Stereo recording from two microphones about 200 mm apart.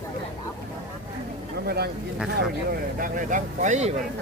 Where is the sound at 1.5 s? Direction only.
55° right (ahead or behind).